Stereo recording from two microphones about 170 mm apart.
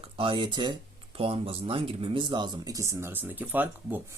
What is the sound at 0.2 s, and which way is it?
Speech, 30° right (ahead or behind).